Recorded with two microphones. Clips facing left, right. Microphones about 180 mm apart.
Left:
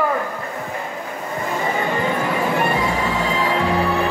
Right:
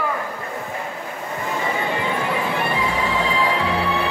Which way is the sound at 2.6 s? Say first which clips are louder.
Left 3 dB; 45° left (ahead or behind).